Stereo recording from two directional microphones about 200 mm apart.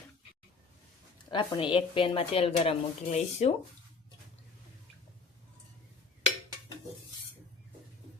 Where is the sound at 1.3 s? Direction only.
25° left (ahead or behind).